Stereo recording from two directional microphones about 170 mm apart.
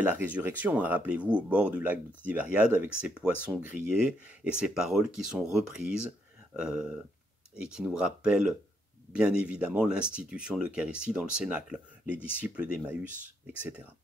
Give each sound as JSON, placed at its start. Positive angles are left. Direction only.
{"t": 0.0, "sound": "speech", "side_deg": -10}